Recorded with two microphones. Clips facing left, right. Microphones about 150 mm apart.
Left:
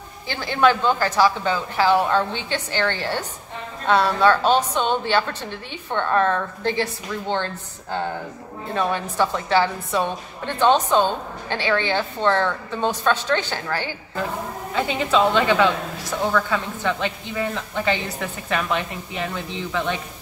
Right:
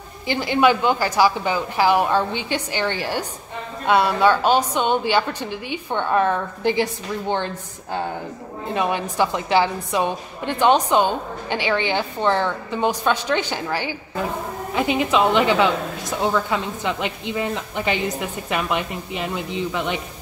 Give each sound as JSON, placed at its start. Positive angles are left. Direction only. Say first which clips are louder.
{"t": 0.3, "sound": "a woman's voice", "louder": "right 2 dB", "side_deg": -15}